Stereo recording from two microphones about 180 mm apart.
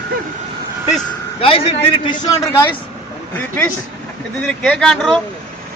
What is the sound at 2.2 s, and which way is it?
Speech, 15° left (ahead or behind).